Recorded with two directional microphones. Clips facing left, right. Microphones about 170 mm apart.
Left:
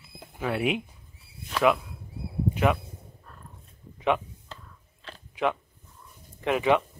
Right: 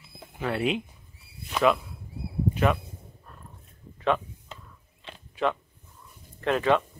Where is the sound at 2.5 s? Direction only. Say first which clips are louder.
Even; 15° left (ahead or behind).